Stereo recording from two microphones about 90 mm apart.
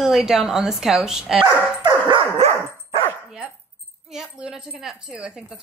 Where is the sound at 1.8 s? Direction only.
50° right (ahead or behind).